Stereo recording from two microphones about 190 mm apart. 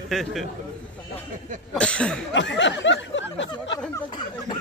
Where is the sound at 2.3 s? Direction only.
70° left (ahead or behind).